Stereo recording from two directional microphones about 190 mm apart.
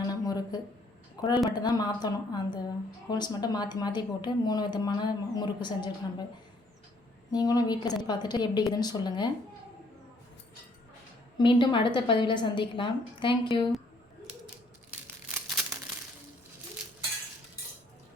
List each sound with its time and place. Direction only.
0.1 s a sound: 20° left (ahead or behind)
1.5 s speech: 20° left (ahead or behind)
7.3 s speech: 20° left (ahead or behind)
11.3 s speech: 25° left (ahead or behind)
15.3 s crumpling: centre (ahead or behind)